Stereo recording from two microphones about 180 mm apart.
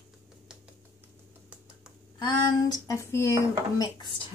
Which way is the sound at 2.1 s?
25° left (ahead or behind).